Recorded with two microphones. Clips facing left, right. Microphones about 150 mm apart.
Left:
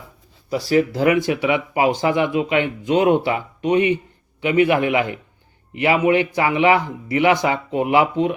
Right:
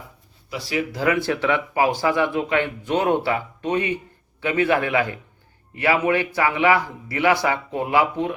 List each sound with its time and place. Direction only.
0.5 s speech: 40° left (ahead or behind)
0.9 s a man's voice: 20° left (ahead or behind)